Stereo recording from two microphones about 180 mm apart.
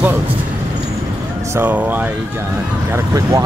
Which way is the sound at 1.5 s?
10° right (ahead or behind).